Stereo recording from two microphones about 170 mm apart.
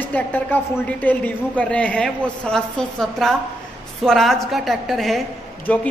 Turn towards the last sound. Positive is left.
turn(degrees=10)  # may be behind; listen again after turning